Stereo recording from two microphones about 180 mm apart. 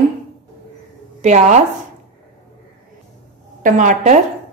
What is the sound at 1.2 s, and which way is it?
Speech, 40° right (ahead or behind).